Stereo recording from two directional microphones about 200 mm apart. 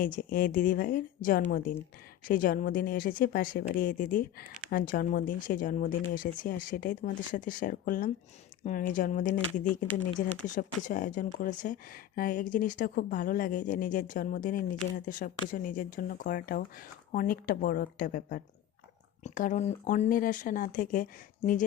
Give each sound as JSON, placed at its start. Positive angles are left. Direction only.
{"t": 0.0, "sound": "speech", "side_deg": 40}